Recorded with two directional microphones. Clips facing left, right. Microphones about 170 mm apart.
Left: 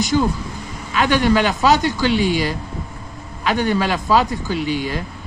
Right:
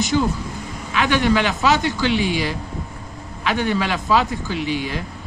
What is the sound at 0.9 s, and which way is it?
Speech, 40° left (ahead or behind).